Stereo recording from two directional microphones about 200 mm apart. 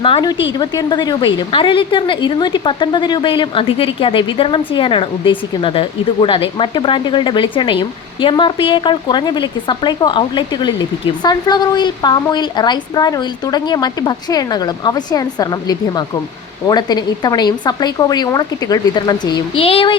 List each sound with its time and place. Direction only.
0.0 s a woman's voice: 25° left (ahead or behind)